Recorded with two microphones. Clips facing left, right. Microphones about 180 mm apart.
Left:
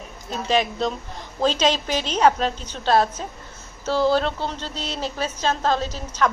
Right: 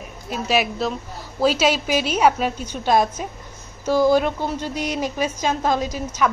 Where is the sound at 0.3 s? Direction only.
10° right (ahead or behind).